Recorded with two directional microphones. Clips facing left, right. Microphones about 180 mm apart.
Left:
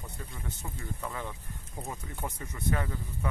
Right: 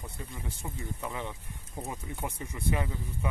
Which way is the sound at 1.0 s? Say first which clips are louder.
Right 1 dB; 20° right (ahead or behind).